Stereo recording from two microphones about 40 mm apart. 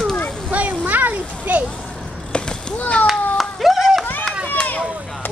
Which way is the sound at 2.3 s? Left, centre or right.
Left.